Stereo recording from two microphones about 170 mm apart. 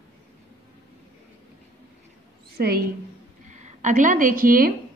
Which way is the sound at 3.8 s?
50° right (ahead or behind).